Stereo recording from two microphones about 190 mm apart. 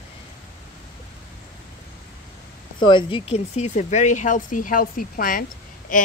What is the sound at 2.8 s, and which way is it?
Speech, 25° left (ahead or behind).